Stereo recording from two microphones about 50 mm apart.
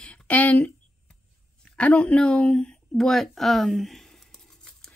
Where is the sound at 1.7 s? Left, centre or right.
Left; by 4.9 s centre.